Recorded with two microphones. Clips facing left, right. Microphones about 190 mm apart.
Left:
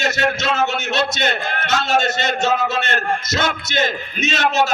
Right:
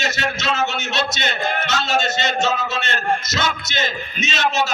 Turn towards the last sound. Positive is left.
turn(degrees=55)  # may be behind; listen again after turning